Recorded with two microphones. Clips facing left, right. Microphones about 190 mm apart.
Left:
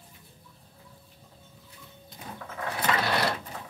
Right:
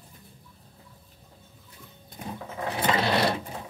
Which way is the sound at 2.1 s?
50° right (ahead or behind).